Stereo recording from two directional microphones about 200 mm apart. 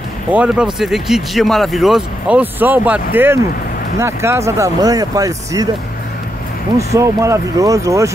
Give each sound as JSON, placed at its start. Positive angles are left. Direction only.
{"t": 0.3, "sound": "speech", "side_deg": -5}
{"t": 6.8, "sound": "speech", "side_deg": -15}